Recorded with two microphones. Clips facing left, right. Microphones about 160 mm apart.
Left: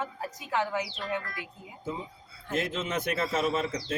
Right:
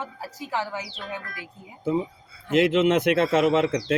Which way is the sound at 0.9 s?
75° right (ahead or behind).